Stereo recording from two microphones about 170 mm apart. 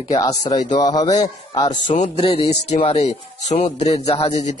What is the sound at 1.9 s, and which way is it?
Speech, 40° left (ahead or behind).